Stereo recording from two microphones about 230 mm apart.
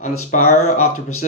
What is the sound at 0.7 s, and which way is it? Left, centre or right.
Speech, left.